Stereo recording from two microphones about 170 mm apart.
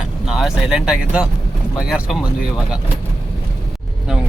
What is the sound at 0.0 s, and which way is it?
Speech, centre (ahead or behind).